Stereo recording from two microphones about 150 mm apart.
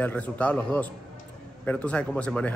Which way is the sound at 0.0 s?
10° left (ahead or behind).